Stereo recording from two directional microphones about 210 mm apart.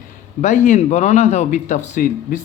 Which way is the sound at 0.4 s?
35° left (ahead or behind).